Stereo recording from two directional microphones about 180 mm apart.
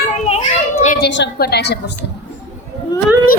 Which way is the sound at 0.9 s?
70° left (ahead or behind).